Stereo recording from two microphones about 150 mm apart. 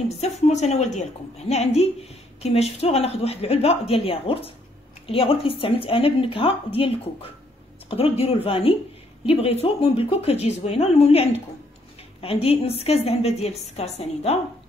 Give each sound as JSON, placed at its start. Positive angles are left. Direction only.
{"t": 0.5, "sound": "a woman's voice", "side_deg": 50}